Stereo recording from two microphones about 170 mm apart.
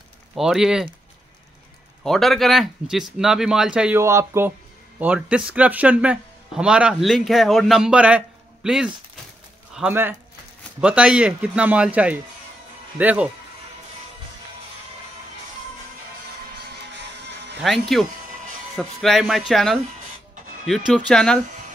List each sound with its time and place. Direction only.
0.4 s speech: 5° right (ahead or behind)
2.0 s speech: centre (ahead or behind)
4.0 s a man's voice: 15° right (ahead or behind)
16.9 s music: 90° right
17.6 s speech: centre (ahead or behind)